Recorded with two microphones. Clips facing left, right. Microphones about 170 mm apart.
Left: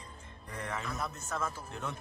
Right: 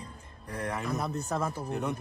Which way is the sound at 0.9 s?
35° right (ahead or behind).